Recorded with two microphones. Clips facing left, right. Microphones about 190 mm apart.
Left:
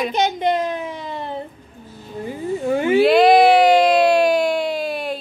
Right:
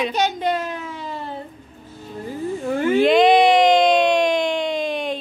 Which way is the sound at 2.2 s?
15° left (ahead or behind).